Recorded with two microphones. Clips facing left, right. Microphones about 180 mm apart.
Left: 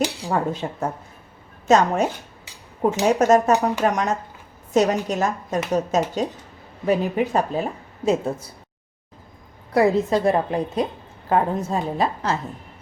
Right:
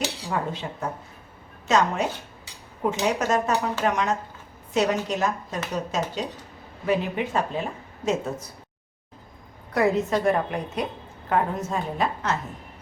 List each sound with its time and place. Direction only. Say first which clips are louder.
0.3 s a woman's voice: left 5 dB; 45° left (ahead or behind)
9.7 s speech: left 4 dB; 30° left (ahead or behind)